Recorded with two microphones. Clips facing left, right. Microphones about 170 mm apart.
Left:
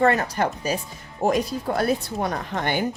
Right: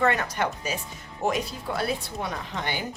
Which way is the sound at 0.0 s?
35° left (ahead or behind).